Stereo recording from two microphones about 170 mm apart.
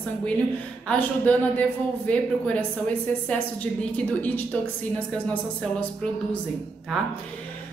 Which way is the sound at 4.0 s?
10° left (ahead or behind).